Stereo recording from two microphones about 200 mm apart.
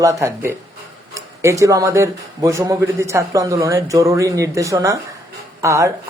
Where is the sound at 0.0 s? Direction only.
15° right (ahead or behind).